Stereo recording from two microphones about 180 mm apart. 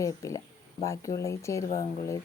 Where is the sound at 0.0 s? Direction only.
15° left (ahead or behind).